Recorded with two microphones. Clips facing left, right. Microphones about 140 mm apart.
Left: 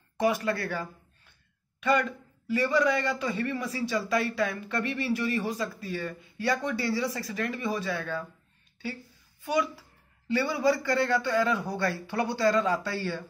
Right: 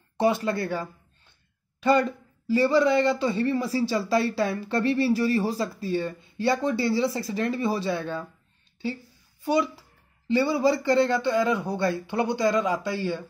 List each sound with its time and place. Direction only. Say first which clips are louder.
0.2 s a man's voice: right 3 dB; 25° right (ahead or behind)
9.4 s a man's voice: right 4 dB; 30° right (ahead or behind)